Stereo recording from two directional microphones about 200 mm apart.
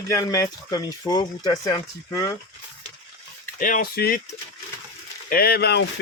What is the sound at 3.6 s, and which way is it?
Speech, 40° left (ahead or behind).